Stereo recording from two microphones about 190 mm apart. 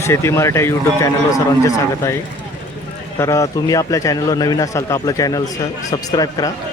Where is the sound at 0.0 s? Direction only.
15° left (ahead or behind).